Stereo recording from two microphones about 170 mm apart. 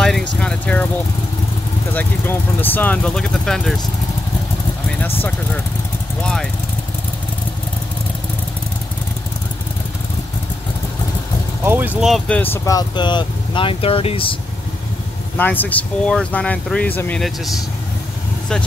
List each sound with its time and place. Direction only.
0.4 s vehicle: 5° left (ahead or behind)
2.0 s speech: 10° left (ahead or behind)
11.6 s speech: 10° right (ahead or behind)
12.3 s speech: 10° left (ahead or behind); by 14.3 s 35° left (ahead or behind)
15.3 s speech: 10° left (ahead or behind)